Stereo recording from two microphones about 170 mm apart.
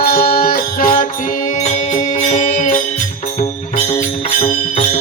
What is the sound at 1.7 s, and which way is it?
Music, 40° left (ahead or behind).